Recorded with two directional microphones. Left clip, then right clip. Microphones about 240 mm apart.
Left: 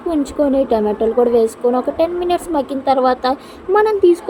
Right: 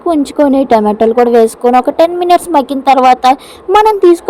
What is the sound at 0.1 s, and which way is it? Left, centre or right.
A woman's voice, right.